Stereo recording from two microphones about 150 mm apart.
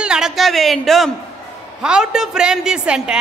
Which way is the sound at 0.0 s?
5° right (ahead or behind).